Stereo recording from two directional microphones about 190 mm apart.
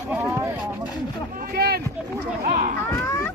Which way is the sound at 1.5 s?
55° right (ahead or behind).